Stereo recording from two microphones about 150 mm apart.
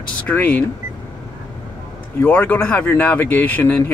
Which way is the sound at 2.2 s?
10° left (ahead or behind).